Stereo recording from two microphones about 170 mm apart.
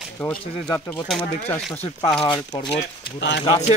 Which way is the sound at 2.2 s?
25° left (ahead or behind).